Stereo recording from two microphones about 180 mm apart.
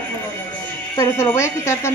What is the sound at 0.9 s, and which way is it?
Speech, 15° left (ahead or behind).